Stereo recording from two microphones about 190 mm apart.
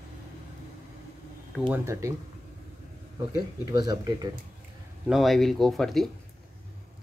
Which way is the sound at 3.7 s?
20° right (ahead or behind).